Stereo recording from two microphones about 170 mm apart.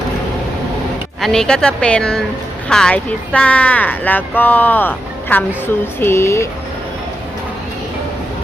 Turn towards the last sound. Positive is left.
turn(degrees=15)  # may be behind; listen again after turning